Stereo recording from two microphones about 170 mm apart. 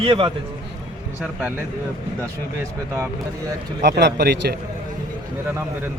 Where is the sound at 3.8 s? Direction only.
90° right; by 4.6 s 75° right (ahead or behind).